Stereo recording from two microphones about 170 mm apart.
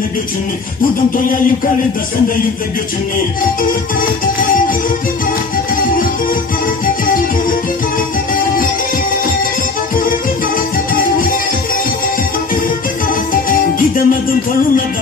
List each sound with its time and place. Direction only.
13.3 s music: 55° left (ahead or behind)